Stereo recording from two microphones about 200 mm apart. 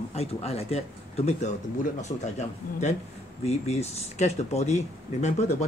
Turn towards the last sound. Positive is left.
turn(degrees=35)  # may be behind; listen again after turning